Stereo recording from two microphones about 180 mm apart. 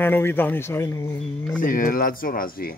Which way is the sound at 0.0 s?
10° left (ahead or behind).